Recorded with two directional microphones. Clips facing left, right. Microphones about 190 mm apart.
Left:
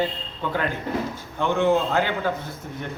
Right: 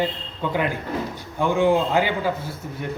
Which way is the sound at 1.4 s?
10° right (ahead or behind).